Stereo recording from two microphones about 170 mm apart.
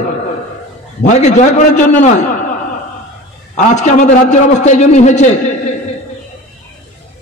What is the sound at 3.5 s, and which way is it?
A man's voice, 45° left (ahead or behind).